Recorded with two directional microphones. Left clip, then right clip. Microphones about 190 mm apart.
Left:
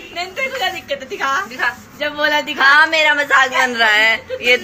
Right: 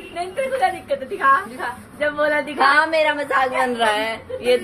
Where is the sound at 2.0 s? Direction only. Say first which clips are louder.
Left 2 dB; 55° right (ahead or behind).